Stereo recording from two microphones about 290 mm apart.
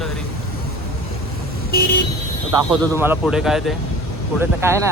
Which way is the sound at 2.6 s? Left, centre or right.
Centre.